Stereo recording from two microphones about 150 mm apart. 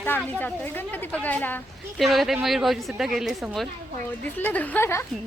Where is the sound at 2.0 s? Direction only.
Centre (ahead or behind).